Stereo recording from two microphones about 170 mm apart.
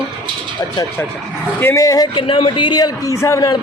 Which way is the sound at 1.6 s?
15° left (ahead or behind).